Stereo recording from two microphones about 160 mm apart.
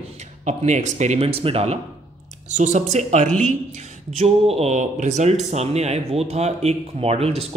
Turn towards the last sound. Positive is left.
turn(degrees=-40)  # may be behind; listen again after turning